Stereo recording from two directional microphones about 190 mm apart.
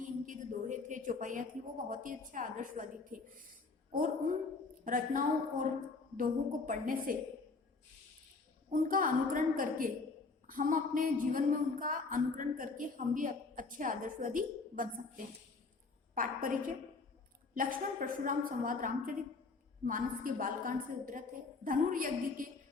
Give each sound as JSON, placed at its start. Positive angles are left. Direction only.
{"t": 0.0, "sound": "a sound", "side_deg": -40}
{"t": 1.9, "sound": "speech", "side_deg": -45}
{"t": 8.7, "sound": "speech", "side_deg": -45}
{"t": 16.1, "sound": "speech", "side_deg": -45}